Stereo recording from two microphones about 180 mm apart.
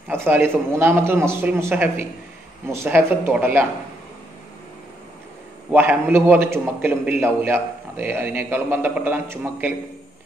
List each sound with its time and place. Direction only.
0.1 s a man's voice: 10° right (ahead or behind)
5.7 s a man's voice: 10° right (ahead or behind)